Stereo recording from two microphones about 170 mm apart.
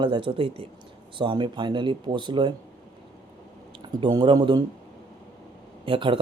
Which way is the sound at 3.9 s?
25° right (ahead or behind).